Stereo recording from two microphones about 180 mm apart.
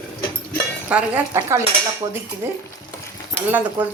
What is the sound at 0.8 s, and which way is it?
Speech, 5° right (ahead or behind).